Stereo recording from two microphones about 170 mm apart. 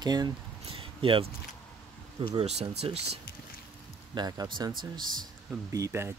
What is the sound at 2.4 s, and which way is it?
Speech, 40° right (ahead or behind).